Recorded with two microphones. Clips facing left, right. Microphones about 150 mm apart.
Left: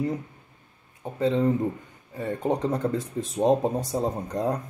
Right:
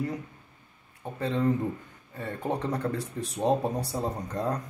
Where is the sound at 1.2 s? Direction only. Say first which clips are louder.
Left 4 dB; 15° left (ahead or behind).